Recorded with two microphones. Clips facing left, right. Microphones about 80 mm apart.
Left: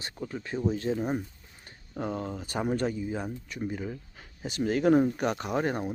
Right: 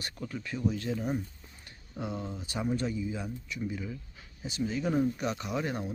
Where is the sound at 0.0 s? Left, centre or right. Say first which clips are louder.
Left 2 dB; left.